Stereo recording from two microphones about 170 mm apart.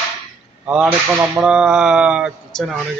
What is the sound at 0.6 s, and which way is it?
Speech, 5° right (ahead or behind).